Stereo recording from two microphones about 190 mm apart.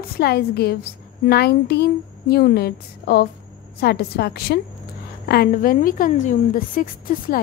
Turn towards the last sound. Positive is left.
turn(degrees=50)  # may be behind; listen again after turning